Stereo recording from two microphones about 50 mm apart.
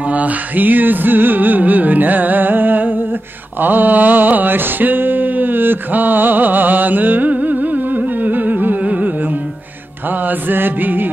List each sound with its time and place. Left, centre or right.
0.1 s music: right
3.6 s a sound: right
8.2 s carnatic music: right
10.2 s music: right